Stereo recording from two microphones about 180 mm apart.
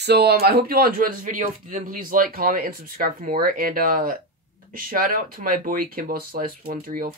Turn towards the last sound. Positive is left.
turn(degrees=-50)  # may be behind; listen again after turning